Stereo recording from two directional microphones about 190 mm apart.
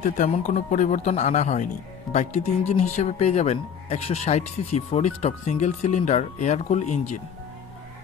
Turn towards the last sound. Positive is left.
turn(degrees=40)  # may be behind; listen again after turning